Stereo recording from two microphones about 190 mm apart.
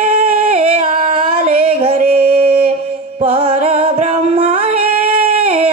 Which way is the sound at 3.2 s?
30° right (ahead or behind).